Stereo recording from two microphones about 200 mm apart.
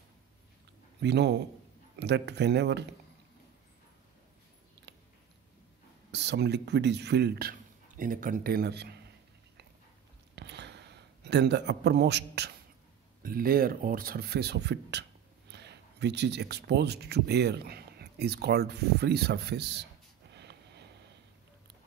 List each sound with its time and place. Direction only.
1.0 s a man's voice: 60° right (ahead or behind)
6.1 s a man's voice: 60° right (ahead or behind)
10.3 s a sound: 60° right (ahead or behind)
13.2 s speech: 45° right (ahead or behind)